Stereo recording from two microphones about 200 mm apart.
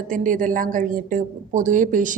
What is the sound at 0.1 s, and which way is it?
Speech, 40° right (ahead or behind).